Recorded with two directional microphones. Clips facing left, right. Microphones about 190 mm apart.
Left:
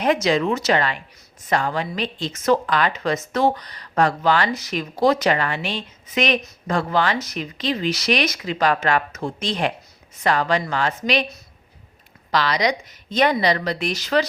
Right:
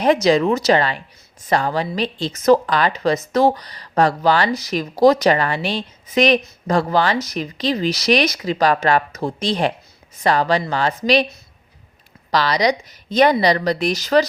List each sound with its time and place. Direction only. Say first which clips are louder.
0.0 s a woman's voice: right 4 dB; 35° right (ahead or behind)
12.3 s a woman's voice: right 3 dB; 35° right (ahead or behind)